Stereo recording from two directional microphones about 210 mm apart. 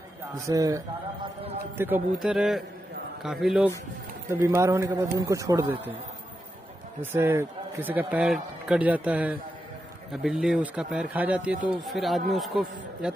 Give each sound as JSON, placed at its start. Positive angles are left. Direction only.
{"t": 0.5, "sound": "a man's voice", "side_deg": -15}
{"t": 4.6, "sound": "a man's voice", "side_deg": -15}
{"t": 7.0, "sound": "a man's voice", "side_deg": -10}